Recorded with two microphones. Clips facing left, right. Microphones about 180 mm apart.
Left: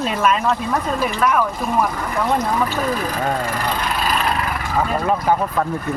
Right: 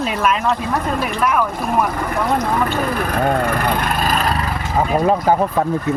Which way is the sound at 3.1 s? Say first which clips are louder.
Right 4 dB; 60° right (ahead or behind).